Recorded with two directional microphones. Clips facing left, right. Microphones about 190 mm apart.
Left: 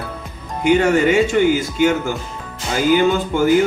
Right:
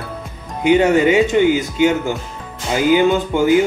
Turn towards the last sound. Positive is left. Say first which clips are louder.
# right 1 dB
turn(degrees=-15)  # may be behind; listen again after turning